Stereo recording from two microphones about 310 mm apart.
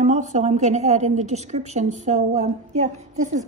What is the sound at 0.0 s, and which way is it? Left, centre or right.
A woman's voice, right.